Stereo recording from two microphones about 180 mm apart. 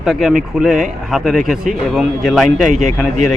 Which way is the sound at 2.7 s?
45° right (ahead or behind).